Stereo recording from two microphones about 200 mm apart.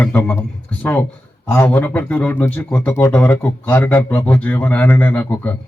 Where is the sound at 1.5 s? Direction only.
5° left (ahead or behind).